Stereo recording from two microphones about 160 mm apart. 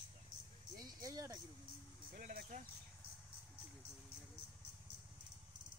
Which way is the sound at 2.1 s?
70° right (ahead or behind).